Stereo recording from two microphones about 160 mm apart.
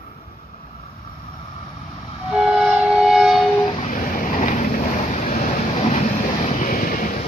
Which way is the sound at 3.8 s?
55° left (ahead or behind).